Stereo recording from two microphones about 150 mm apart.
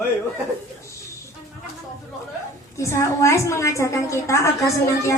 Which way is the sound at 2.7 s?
20° left (ahead or behind).